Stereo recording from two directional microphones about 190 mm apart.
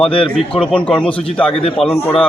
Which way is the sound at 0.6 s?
5° left (ahead or behind).